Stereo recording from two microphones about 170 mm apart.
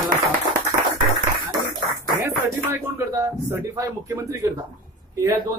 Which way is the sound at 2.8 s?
15° right (ahead or behind).